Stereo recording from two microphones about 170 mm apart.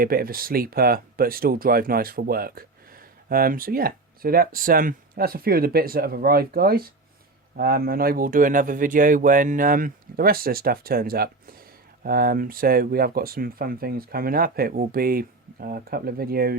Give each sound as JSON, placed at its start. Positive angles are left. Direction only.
{"t": 0.0, "sound": "speech", "side_deg": -60}